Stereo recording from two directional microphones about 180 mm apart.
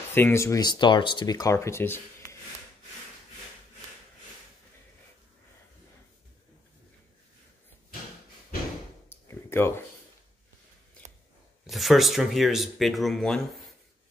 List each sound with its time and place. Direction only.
0.1 s speech: 15° left (ahead or behind)
9.1 s a sound: 15° left (ahead or behind)
11.6 s speech: centre (ahead or behind)